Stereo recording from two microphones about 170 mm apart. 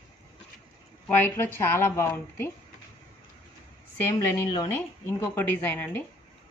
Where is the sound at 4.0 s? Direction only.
15° left (ahead or behind).